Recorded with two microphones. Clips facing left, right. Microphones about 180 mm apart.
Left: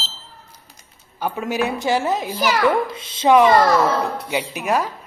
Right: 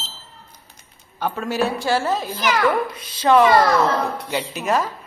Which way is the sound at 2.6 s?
25° left (ahead or behind).